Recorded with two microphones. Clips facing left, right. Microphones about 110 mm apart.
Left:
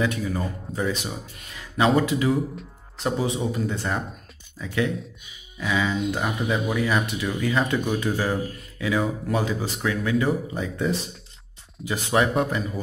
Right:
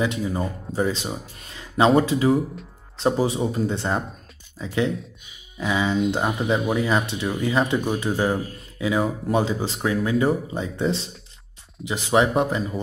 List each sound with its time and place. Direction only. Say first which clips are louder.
0.0 s speech: right 1 dB; 25° right (ahead or behind)